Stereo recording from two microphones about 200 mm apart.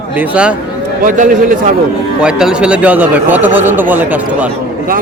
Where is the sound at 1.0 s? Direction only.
40° right (ahead or behind).